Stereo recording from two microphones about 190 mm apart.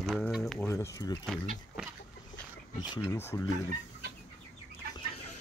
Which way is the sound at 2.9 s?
15° left (ahead or behind).